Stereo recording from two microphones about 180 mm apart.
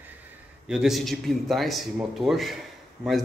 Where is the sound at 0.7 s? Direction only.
Centre (ahead or behind).